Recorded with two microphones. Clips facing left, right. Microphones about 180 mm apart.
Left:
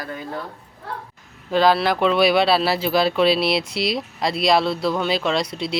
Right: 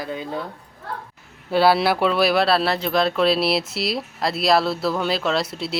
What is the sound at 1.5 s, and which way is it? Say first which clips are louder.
Speech: even; 10° right (ahead or behind).